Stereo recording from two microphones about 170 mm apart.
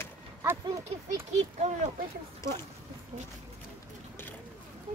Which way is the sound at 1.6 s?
40° right (ahead or behind).